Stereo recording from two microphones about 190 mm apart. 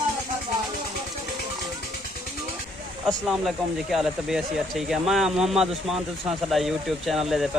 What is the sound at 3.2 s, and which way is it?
Speech, centre (ahead or behind).